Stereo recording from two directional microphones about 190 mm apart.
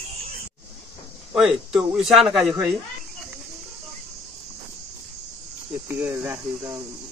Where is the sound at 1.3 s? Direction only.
5° right (ahead or behind).